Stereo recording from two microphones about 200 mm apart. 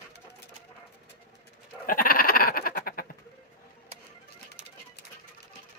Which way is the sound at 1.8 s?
45° left (ahead or behind).